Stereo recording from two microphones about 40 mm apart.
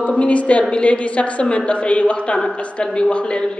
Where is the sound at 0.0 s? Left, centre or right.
Left.